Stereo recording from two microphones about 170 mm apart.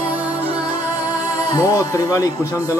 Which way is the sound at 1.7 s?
20° left (ahead or behind).